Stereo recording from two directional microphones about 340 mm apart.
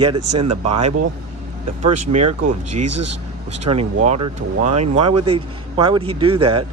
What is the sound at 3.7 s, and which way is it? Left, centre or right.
Speech, centre.